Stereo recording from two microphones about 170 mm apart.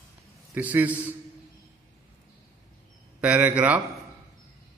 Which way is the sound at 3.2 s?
5° right (ahead or behind).